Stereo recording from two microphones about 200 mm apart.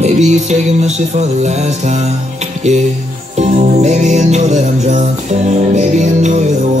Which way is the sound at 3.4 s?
35° right (ahead or behind).